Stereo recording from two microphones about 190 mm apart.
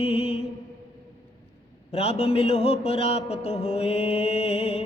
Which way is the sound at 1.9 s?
30° left (ahead or behind).